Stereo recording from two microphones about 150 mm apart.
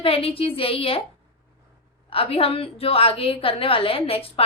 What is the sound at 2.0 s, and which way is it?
A woman's voice, 40° left (ahead or behind).